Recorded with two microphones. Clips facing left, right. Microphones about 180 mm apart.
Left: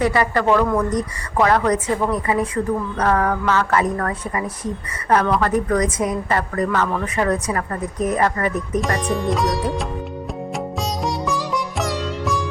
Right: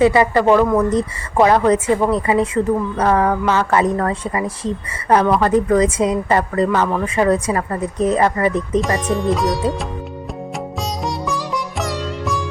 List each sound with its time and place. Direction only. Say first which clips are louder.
0.0 s speech: right 5 dB; 20° right (ahead or behind)
8.8 s sitar: right 3 dB; centre (ahead or behind)
11.0 s music: even; centre (ahead or behind)